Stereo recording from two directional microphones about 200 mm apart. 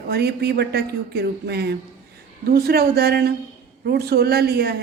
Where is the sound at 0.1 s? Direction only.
55° right (ahead or behind).